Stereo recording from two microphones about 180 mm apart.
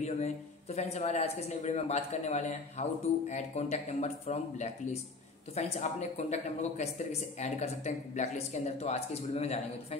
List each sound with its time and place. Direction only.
0.0 s speech: 35° left (ahead or behind)